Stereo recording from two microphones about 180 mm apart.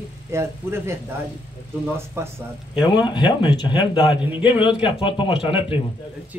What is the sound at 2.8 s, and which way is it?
A man's voice, 25° left (ahead or behind).